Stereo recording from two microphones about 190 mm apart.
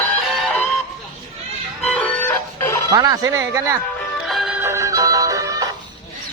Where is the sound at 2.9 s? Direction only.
20° right (ahead or behind).